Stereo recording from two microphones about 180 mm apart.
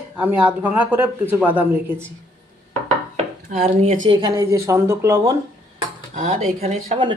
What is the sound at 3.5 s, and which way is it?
Speech, 40° right (ahead or behind).